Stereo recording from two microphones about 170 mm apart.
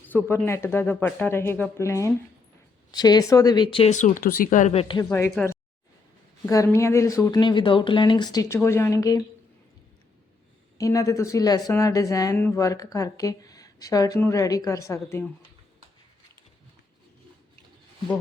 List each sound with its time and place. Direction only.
0.1 s a woman's voice: 10° left (ahead or behind); by 3.9 s 30° left (ahead or behind)
3.9 s speech: 50° left (ahead or behind)
5.0 s speech: 10° left (ahead or behind)
6.4 s a woman's voice: 15° left (ahead or behind)
10.8 s a woman's voice: 20° left (ahead or behind)